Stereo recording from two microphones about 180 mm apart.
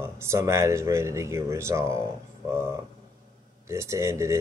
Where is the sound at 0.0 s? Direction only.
15° right (ahead or behind).